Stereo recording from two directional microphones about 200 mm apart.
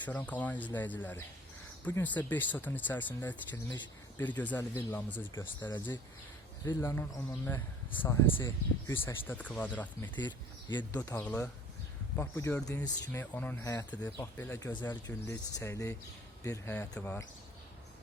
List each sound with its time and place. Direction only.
0.0 s speech: 10° left (ahead or behind)
3.5 s speech: 20° left (ahead or behind)
4.2 s speech: 10° left (ahead or behind)
5.7 s speech: 20° left (ahead or behind)
10.2 s speech: 20° left (ahead or behind)
11.2 s speech: 5° left (ahead or behind)